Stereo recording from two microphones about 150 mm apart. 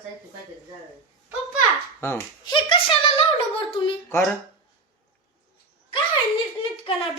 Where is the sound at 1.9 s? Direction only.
15° left (ahead or behind).